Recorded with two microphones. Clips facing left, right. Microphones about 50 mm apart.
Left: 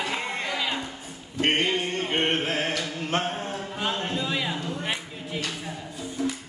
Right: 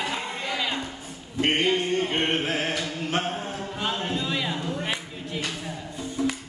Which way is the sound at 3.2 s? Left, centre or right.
Centre.